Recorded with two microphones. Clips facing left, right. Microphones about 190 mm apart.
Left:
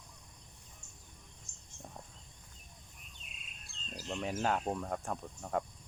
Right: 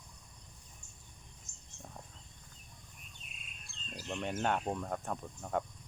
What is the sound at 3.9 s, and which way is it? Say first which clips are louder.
Speech: even; 5° left (ahead or behind).